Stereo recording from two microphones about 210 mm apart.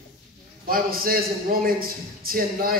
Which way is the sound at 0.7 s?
45° right (ahead or behind).